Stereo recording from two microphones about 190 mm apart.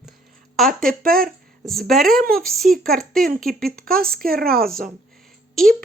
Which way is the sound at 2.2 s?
50° right (ahead or behind).